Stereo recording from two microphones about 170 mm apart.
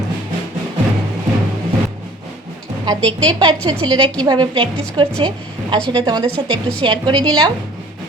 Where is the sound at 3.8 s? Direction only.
30° right (ahead or behind).